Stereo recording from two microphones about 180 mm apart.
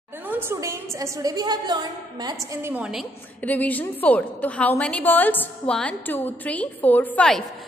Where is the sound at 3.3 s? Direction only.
10° left (ahead or behind).